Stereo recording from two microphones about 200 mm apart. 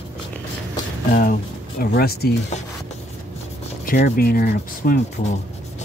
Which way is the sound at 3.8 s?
45° left (ahead or behind).